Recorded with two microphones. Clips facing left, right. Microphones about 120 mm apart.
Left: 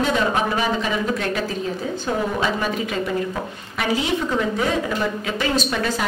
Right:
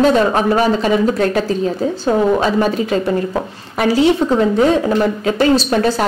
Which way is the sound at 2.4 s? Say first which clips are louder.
Right 7 dB; 35° right (ahead or behind).